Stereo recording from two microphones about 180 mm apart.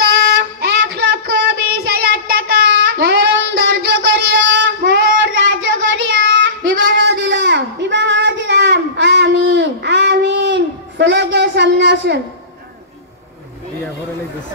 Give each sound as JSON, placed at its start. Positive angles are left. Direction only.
{"t": 0.6, "sound": "child singing", "side_deg": -60}
{"t": 6.0, "sound": "child singing", "side_deg": -90}